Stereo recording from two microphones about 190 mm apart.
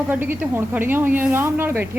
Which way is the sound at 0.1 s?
10° right (ahead or behind).